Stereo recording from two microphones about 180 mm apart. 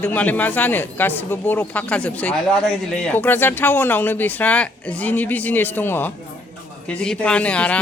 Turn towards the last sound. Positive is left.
turn(degrees=5)  # may be behind; listen again after turning